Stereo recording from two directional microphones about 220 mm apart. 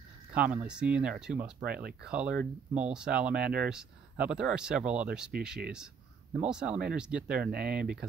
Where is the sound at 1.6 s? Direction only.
45° right (ahead or behind).